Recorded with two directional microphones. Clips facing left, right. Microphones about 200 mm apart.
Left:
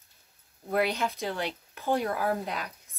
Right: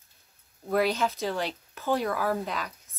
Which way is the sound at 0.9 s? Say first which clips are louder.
Right 3 dB; 15° left (ahead or behind).